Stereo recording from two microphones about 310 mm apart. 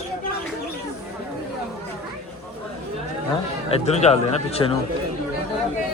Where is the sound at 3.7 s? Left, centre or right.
Left.